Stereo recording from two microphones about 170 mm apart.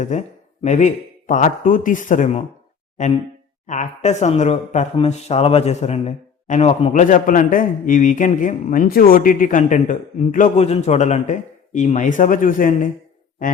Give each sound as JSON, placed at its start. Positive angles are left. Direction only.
{"t": 0.0, "sound": "speech", "side_deg": 45}
{"t": 3.7, "sound": "speech", "side_deg": 45}